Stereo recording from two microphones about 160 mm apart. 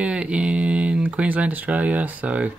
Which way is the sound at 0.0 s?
5° right (ahead or behind).